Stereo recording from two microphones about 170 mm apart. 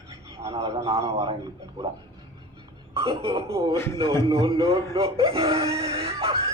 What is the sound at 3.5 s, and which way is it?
A man's voice, 20° right (ahead or behind).